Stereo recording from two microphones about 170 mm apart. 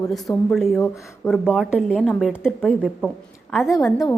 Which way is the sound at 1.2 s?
15° left (ahead or behind).